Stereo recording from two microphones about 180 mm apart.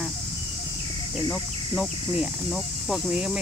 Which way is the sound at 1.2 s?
15° left (ahead or behind).